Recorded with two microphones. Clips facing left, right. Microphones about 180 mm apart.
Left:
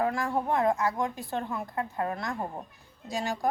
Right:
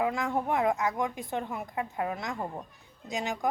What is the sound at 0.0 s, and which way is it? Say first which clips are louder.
A woman's voice: left 1 dB; 20° right (ahead or behind).